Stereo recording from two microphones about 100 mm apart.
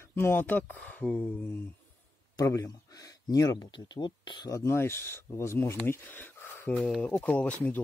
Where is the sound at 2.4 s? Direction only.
35° left (ahead or behind).